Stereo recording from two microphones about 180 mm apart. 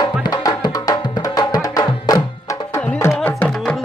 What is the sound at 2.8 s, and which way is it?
Music, 5° left (ahead or behind).